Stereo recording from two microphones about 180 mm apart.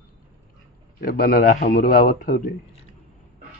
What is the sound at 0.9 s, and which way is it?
A man's voice, 55° left (ahead or behind).